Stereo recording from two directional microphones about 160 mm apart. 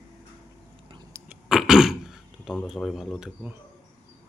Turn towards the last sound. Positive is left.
turn(degrees=-5)  # may be behind; listen again after turning